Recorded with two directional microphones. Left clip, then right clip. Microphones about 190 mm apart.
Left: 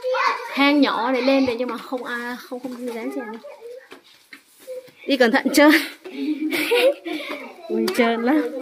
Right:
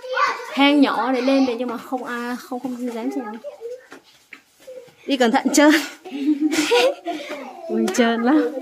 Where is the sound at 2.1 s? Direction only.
25° right (ahead or behind).